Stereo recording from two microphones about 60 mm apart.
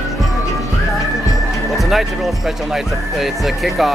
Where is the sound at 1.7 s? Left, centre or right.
Centre.